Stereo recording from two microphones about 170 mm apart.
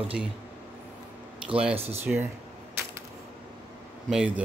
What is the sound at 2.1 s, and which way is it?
Speech, 5° right (ahead or behind).